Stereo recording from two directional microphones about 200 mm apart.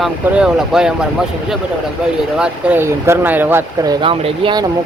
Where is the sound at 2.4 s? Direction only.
10° right (ahead or behind).